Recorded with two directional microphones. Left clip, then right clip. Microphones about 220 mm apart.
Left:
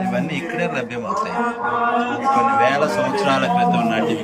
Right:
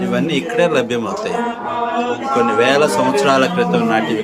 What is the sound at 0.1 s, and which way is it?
A man's voice, 25° right (ahead or behind).